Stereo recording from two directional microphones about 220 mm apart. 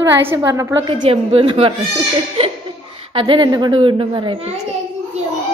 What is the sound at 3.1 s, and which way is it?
Speech, 20° right (ahead or behind).